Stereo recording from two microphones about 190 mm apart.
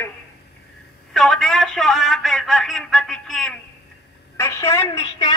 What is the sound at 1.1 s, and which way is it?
Speech, centre (ahead or behind).